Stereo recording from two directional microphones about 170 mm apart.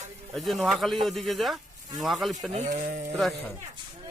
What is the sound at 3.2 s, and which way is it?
Speech, centre (ahead or behind).